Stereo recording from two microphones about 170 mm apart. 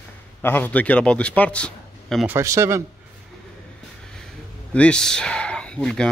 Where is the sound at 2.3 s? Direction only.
15° right (ahead or behind).